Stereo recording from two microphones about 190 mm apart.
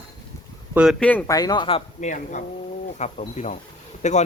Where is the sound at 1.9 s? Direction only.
40° left (ahead or behind).